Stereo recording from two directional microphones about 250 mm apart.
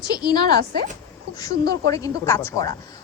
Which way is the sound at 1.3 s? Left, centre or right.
Centre.